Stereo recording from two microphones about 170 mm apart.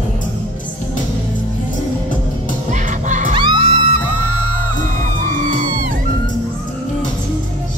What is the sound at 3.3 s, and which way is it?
Music, 25° right (ahead or behind).